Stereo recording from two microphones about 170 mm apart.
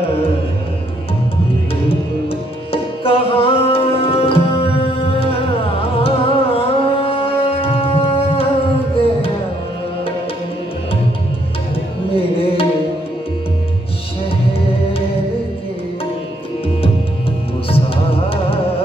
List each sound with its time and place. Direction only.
2.7 s music: 35° left (ahead or behind)
12.1 s tabla: 35° left (ahead or behind)
17.6 s music: 35° left (ahead or behind)